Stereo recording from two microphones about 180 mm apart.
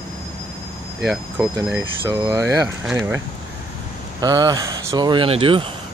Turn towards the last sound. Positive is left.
turn(degrees=-30)  # may be behind; listen again after turning